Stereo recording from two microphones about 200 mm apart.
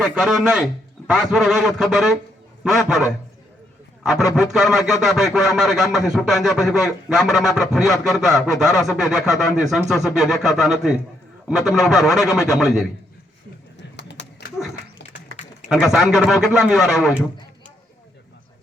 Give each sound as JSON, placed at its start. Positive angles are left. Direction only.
{"t": 0.0, "sound": "speech", "side_deg": -5}
{"t": 4.0, "sound": "speech", "side_deg": 0}
{"t": 14.2, "sound": "a sound", "side_deg": 60}
{"t": 15.7, "sound": "speech", "side_deg": 0}